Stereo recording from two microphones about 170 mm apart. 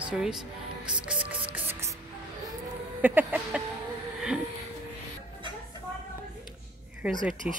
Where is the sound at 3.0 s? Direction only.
10° right (ahead or behind).